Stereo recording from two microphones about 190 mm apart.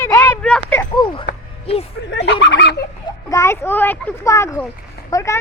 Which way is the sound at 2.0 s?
65° left (ahead or behind).